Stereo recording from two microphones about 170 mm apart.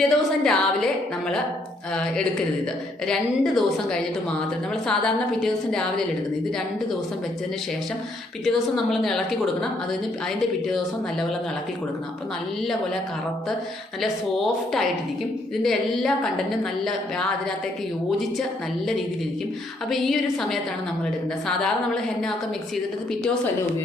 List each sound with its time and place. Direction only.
0.0 s a woman's voice: 5° left (ahead or behind)
3.1 s a woman's voice: 5° left (ahead or behind)
8.4 s a woman's voice: centre (ahead or behind)
14.0 s a woman's voice: centre (ahead or behind)
19.9 s a woman's voice: centre (ahead or behind)